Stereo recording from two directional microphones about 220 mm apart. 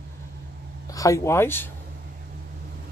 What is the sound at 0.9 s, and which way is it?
Speech, 15° left (ahead or behind).